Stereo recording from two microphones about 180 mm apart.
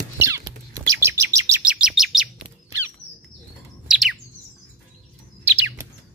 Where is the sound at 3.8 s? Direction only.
Centre (ahead or behind).